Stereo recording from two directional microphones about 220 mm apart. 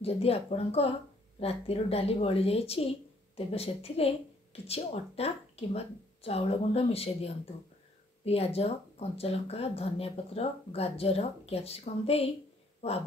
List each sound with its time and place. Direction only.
0.0 s speech: 25° left (ahead or behind)